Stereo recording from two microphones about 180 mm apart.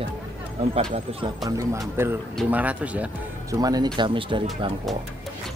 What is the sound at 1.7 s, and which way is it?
Speech, 15° right (ahead or behind).